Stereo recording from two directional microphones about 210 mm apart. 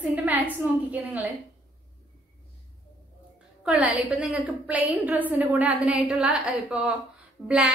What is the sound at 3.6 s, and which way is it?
A woman's voice, 5° right (ahead or behind).